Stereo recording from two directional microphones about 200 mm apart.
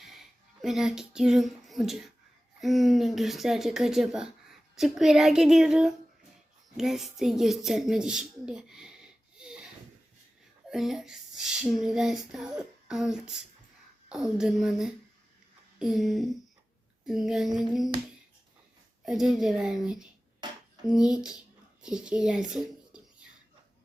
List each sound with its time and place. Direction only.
0.0 s a sound: centre (ahead or behind)
2.6 s speech: centre (ahead or behind)
10.7 s speech: centre (ahead or behind)
19.0 s speech: centre (ahead or behind)
20.4 s a sound: 25° right (ahead or behind)
20.9 s speech: 5° right (ahead or behind)